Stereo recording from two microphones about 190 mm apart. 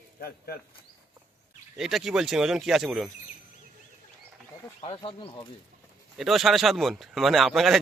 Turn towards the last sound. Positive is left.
turn(degrees=0)  # may be behind; listen again after turning